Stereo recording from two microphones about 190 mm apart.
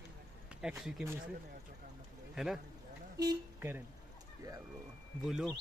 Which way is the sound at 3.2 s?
15° right (ahead or behind).